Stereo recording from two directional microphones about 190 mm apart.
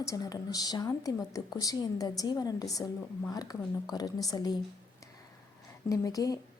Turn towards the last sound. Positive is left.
turn(degrees=20)  # may be behind; listen again after turning